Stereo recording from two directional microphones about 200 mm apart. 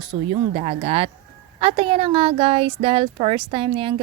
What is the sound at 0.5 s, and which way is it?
Speech, 30° right (ahead or behind).